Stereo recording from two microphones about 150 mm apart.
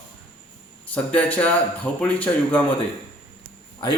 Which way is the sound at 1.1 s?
10° left (ahead or behind).